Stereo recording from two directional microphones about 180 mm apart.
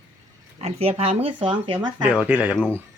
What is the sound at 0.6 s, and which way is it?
Speech, 35° right (ahead or behind).